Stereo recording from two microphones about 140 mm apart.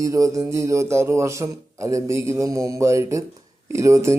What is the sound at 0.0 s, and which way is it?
Speech, 25° right (ahead or behind).